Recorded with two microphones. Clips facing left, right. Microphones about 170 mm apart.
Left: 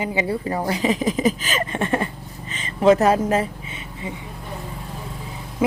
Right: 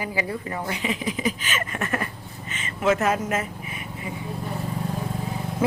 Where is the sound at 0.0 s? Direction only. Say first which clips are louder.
Left 5 dB; 25° left (ahead or behind).